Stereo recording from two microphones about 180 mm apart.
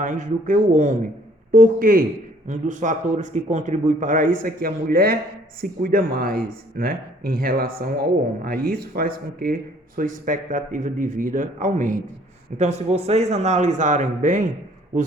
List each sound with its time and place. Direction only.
0.0 s a man's voice: 45° right (ahead or behind)